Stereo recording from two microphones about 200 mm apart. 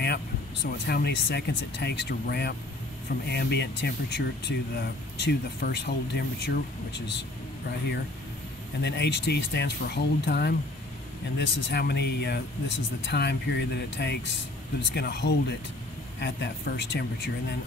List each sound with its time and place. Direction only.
0.7 s speech: 55° left (ahead or behind)
8.8 s speech: 60° left (ahead or behind)